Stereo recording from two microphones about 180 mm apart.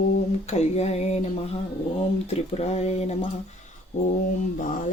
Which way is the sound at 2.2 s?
35° left (ahead or behind).